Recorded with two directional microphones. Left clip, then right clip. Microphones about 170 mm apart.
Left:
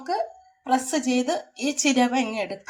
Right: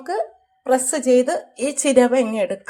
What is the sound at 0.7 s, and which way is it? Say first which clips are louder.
A woman's voice: right 7 dB; 50° right (ahead or behind).